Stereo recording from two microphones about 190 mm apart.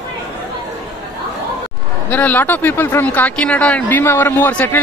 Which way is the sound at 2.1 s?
10° left (ahead or behind).